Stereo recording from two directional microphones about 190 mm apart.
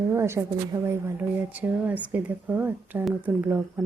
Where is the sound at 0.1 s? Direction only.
15° right (ahead or behind).